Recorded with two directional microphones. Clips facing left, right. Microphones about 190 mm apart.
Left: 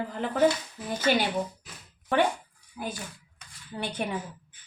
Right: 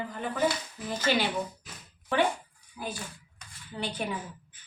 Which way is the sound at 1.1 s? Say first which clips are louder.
Left 3 dB; 55° left (ahead or behind).